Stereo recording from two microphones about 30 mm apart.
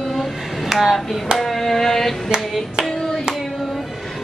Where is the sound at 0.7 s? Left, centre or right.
Centre.